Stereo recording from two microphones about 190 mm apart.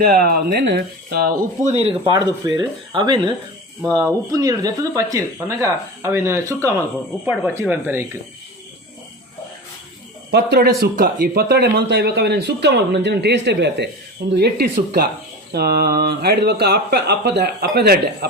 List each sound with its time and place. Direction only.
0.0 s speech: 50° right (ahead or behind)
1.6 s speech: 35° right (ahead or behind); by 6.7 s 15° right (ahead or behind)
7.3 s speech: 5° right (ahead or behind)
10.3 s speech: 55° right (ahead or behind)